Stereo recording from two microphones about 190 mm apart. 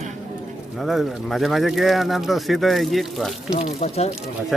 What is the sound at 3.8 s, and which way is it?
Speech, 35° left (ahead or behind).